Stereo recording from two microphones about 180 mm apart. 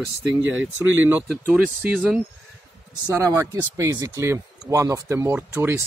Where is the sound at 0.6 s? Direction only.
10° right (ahead or behind).